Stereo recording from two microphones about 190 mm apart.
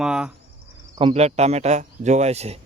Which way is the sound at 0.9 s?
30° right (ahead or behind).